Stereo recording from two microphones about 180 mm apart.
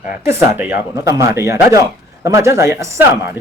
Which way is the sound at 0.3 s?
10° right (ahead or behind).